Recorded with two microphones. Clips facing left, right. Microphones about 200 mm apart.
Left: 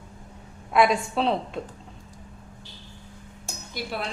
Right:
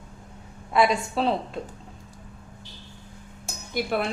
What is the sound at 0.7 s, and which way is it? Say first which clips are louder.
Speech: left 1 dB; centre (ahead or behind).